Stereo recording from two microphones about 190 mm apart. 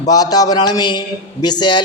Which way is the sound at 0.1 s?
20° left (ahead or behind).